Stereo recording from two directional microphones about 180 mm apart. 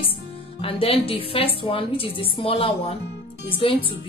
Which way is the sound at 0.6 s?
30° left (ahead or behind).